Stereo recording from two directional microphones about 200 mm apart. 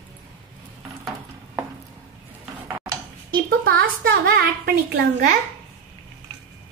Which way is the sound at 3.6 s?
50° right (ahead or behind).